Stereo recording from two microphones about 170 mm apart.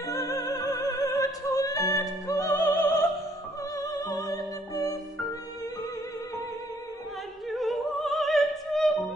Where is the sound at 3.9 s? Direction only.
20° left (ahead or behind).